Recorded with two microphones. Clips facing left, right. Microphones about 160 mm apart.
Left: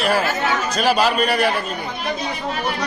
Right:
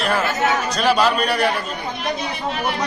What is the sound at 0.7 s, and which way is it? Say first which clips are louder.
Speech: left 1 dB; 5° left (ahead or behind).